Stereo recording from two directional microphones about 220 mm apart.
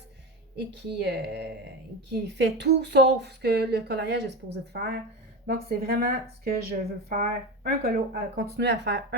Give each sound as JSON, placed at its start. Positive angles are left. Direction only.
{"t": 0.5, "sound": "speech", "side_deg": -50}